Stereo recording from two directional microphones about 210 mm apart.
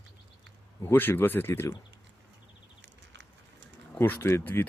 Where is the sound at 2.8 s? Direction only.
55° right (ahead or behind).